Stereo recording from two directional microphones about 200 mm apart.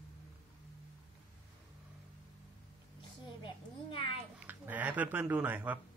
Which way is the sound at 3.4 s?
25° left (ahead or behind).